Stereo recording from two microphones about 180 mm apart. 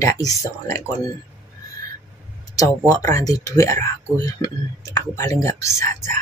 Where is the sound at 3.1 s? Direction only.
20° left (ahead or behind).